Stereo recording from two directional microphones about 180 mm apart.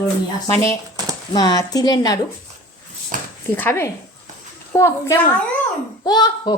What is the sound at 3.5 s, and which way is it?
A woman's voice, 10° left (ahead or behind).